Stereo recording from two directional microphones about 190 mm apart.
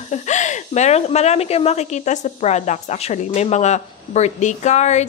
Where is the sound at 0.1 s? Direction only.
40° left (ahead or behind).